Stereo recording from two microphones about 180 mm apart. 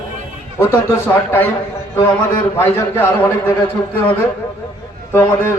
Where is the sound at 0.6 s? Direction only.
15° left (ahead or behind).